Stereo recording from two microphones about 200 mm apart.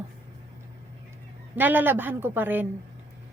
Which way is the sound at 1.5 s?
10° right (ahead or behind).